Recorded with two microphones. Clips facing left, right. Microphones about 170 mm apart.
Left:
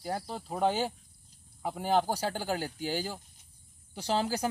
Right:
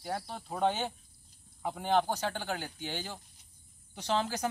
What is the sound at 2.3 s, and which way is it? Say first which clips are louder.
Speech: left 4 dB; 35° left (ahead or behind).